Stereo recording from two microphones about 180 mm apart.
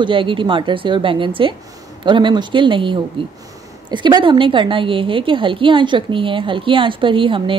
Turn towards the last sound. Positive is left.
turn(degrees=-30)  # may be behind; listen again after turning